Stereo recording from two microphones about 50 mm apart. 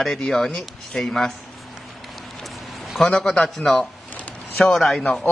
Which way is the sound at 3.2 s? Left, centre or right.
Centre.